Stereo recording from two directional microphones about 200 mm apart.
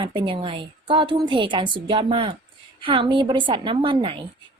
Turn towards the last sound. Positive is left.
turn(degrees=-25)  # may be behind; listen again after turning